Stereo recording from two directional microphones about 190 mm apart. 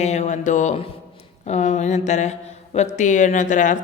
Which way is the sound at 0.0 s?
35° left (ahead or behind).